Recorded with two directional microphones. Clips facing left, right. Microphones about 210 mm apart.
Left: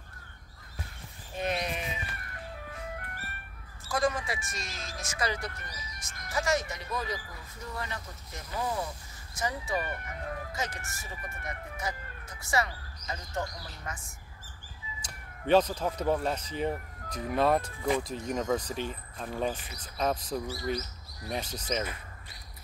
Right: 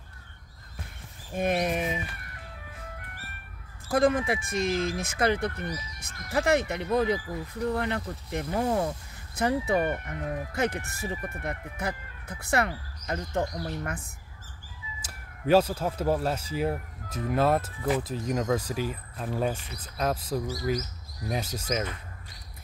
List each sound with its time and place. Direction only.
1.3 s speech: 50° right (ahead or behind)
3.8 s speech: 55° right (ahead or behind)
15.0 s speech: 5° right (ahead or behind)